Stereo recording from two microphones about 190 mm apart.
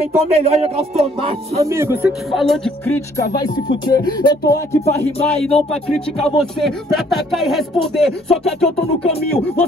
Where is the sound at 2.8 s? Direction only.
15° left (ahead or behind).